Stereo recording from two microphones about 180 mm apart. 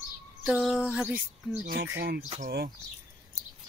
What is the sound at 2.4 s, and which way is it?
Speech, 65° right (ahead or behind).